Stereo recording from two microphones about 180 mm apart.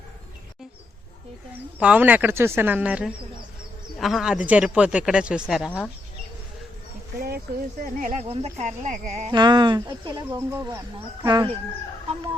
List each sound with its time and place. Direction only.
1.8 s speech: 10° right (ahead or behind)
7.2 s speech: 60° right (ahead or behind)
8.3 s speech: 35° right (ahead or behind)
9.3 s speech: 25° right (ahead or behind)